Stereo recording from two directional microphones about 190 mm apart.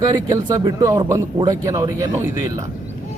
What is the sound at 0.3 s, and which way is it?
Speech, 20° right (ahead or behind).